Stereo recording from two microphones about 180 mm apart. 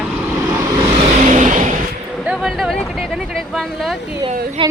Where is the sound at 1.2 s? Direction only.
45° right (ahead or behind).